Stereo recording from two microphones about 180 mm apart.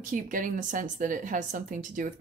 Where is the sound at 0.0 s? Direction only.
50° right (ahead or behind).